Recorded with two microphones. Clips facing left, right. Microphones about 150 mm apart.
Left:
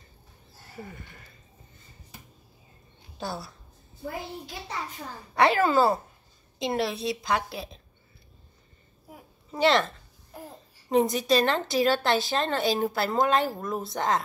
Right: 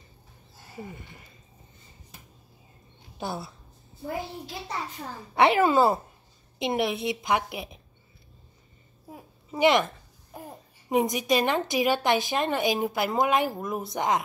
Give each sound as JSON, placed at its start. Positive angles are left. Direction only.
{"t": 0.7, "sound": "a woman's voice", "side_deg": -20}
{"t": 3.2, "sound": "a woman's voice", "side_deg": -20}
{"t": 5.3, "sound": "a woman's voice", "side_deg": -20}
{"t": 9.5, "sound": "a child's voice", "side_deg": -15}